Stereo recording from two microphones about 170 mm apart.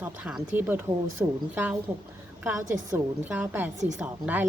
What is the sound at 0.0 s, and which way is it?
A woman's voice, 10° right (ahead or behind).